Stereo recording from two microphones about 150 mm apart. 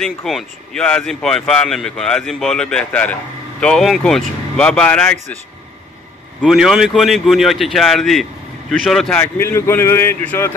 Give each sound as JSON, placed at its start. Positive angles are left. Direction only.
{"t": 0.0, "sound": "speech", "side_deg": 0}
{"t": 6.4, "sound": "speech", "side_deg": 0}
{"t": 9.4, "sound": "speech", "side_deg": 15}